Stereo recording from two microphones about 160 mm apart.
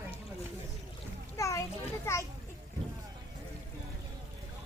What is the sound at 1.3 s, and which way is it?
Speech, 20° left (ahead or behind).